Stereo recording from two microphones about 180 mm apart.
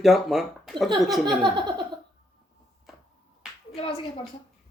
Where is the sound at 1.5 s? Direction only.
25° right (ahead or behind).